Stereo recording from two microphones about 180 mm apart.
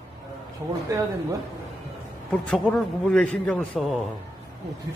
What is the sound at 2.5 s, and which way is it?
A man's voice, 5° left (ahead or behind).